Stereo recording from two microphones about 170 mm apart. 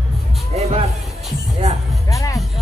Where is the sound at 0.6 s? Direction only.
35° right (ahead or behind).